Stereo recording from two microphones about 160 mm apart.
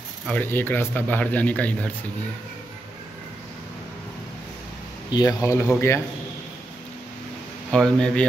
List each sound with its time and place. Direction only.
0.3 s speech: 10° left (ahead or behind)
5.1 s speech: 20° left (ahead or behind)
7.7 s speech: 5° left (ahead or behind)